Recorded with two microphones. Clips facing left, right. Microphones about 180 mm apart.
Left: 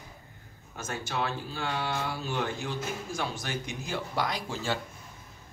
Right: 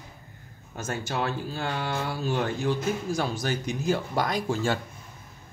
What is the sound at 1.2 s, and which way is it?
Speech, 45° right (ahead or behind).